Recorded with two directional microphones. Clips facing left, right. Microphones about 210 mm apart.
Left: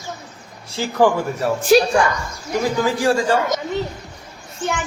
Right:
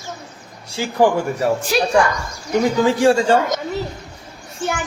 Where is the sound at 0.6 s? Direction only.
10° right (ahead or behind).